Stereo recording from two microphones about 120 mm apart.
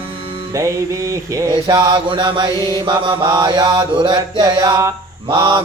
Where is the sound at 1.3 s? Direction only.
35° right (ahead or behind).